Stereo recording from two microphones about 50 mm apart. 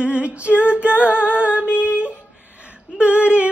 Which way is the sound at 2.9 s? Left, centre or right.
Right.